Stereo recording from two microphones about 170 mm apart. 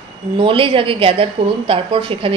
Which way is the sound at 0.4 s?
30° right (ahead or behind).